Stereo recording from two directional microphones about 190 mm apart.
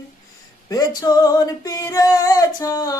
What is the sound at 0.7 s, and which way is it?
Music, 20° left (ahead or behind).